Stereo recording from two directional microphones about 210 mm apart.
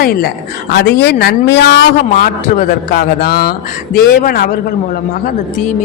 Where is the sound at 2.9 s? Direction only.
45° left (ahead or behind).